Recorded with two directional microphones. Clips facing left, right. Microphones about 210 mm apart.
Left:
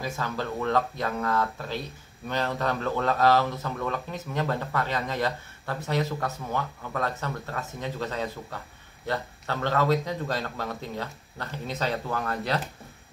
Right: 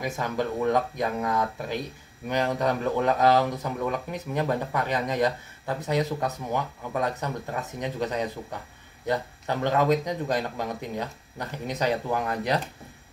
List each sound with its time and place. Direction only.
0.0 s a man's voice: 15° right (ahead or behind)